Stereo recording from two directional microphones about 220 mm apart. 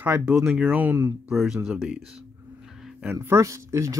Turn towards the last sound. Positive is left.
turn(degrees=-15)  # may be behind; listen again after turning